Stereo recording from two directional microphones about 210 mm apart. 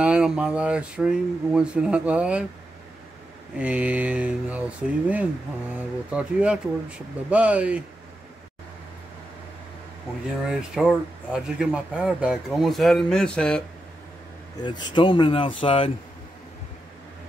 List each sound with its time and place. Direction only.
0.0 s speech: 5° right (ahead or behind)
3.5 s speech: 5° right (ahead or behind)
10.4 s speech: 5° right (ahead or behind)
14.6 s speech: 20° left (ahead or behind)